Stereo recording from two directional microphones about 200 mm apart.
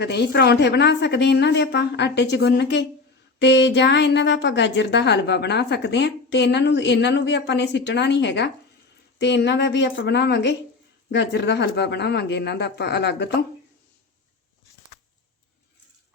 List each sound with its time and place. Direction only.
0.0 s a woman's voice: 55° left (ahead or behind)